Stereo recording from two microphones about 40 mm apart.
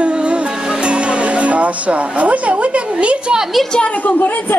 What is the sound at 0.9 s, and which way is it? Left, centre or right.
Music, right.